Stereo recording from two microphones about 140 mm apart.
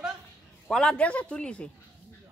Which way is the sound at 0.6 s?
5° left (ahead or behind).